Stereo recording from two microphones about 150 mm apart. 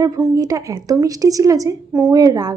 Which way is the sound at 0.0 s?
20° right (ahead or behind).